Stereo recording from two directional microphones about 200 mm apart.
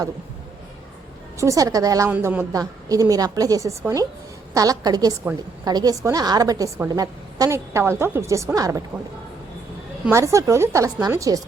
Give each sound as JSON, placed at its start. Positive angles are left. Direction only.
{"t": 1.4, "sound": "a woman's voice", "side_deg": -15}
{"t": 10.1, "sound": "a woman's voice", "side_deg": -15}